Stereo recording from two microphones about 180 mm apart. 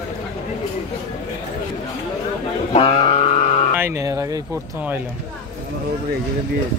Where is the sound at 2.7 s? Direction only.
35° left (ahead or behind).